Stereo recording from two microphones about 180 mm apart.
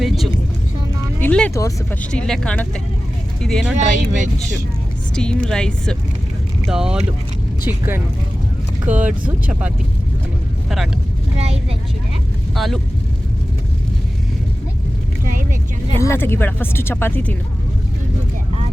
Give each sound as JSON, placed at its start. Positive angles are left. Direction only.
{"t": 1.2, "sound": "a sound", "side_deg": 10}
{"t": 1.5, "sound": "speech", "side_deg": 15}
{"t": 3.8, "sound": "speech", "side_deg": -40}
{"t": 5.1, "sound": "speech", "side_deg": 5}
{"t": 11.3, "sound": "speech", "side_deg": -35}
{"t": 12.5, "sound": "speech", "side_deg": 0}
{"t": 15.2, "sound": "vehicle", "side_deg": -50}
{"t": 16.0, "sound": "speech", "side_deg": 15}